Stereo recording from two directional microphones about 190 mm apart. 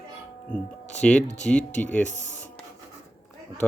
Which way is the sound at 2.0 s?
40° left (ahead or behind).